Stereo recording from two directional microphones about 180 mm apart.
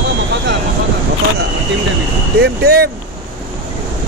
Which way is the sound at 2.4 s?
60° right (ahead or behind).